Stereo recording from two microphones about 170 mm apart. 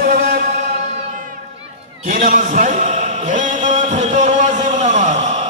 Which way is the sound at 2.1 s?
50° right (ahead or behind).